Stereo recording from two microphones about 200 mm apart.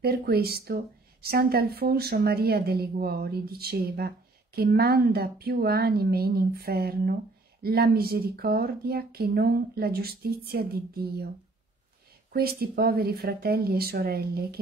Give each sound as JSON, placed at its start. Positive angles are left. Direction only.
{"t": 0.0, "sound": "a woman's voice", "side_deg": -50}
{"t": 12.3, "sound": "a woman's voice", "side_deg": -50}